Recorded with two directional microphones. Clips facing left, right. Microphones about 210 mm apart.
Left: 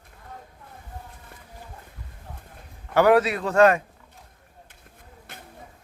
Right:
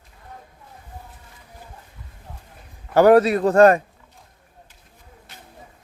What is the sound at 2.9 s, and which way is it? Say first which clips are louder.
Speech: right 5 dB; 40° right (ahead or behind).